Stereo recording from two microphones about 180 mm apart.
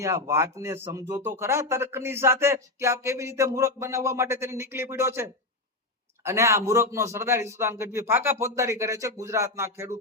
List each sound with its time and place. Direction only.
0.0 s speech: 15° right (ahead or behind)